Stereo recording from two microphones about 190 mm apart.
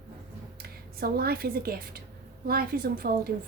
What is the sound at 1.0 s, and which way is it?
A woman's voice, 55° right (ahead or behind).